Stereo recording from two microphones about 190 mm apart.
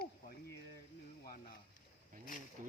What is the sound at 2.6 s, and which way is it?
Speech, 45° right (ahead or behind).